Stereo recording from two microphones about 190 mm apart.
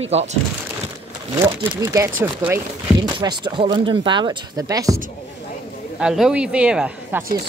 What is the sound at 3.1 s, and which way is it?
Speech, 25° right (ahead or behind).